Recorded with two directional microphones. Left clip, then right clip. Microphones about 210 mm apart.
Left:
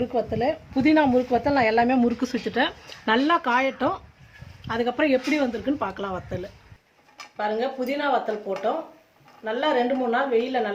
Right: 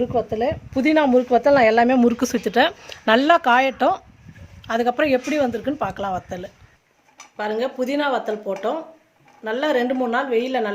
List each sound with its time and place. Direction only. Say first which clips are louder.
0.0 s speech: right 3 dB; 40° right (ahead or behind)